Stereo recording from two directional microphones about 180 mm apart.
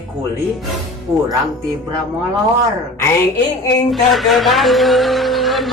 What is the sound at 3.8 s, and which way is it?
Speech, centre (ahead or behind).